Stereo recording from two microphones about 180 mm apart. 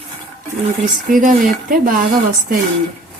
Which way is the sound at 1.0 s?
50° right (ahead or behind).